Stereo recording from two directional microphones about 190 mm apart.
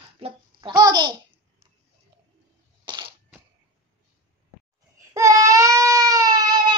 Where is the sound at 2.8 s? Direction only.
25° right (ahead or behind).